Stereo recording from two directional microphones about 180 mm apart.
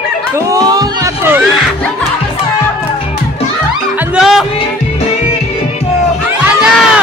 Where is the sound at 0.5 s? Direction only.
20° right (ahead or behind).